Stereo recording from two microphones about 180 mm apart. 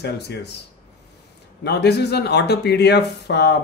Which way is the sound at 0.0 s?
65° left (ahead or behind).